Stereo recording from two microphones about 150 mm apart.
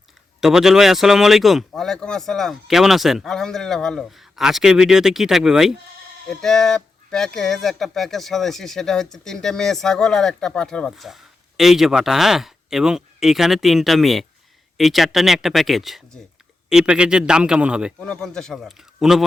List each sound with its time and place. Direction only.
0.4 s a man's voice: centre (ahead or behind)
18.0 s speech: 5° left (ahead or behind)